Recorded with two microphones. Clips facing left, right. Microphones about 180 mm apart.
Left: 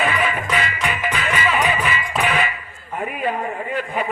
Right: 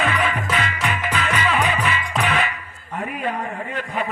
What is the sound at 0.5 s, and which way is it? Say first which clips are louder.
Music: left 1 dB; 10° left (ahead or behind).